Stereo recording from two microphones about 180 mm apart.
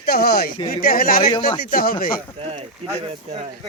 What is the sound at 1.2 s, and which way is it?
Speech, 30° left (ahead or behind).